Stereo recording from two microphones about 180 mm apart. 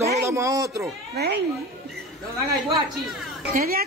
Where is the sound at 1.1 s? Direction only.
65° right (ahead or behind).